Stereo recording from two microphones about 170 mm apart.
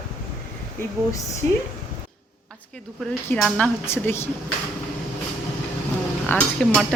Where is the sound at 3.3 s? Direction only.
5° left (ahead or behind).